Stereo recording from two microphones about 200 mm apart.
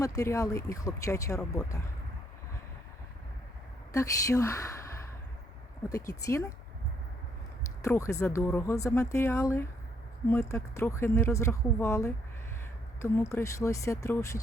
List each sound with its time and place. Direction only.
0.0 s speech: 15° left (ahead or behind)
3.9 s a woman's voice: 15° left (ahead or behind)
7.9 s speech: 15° left (ahead or behind)